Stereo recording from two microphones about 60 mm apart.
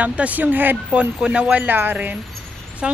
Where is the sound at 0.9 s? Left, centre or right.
Centre.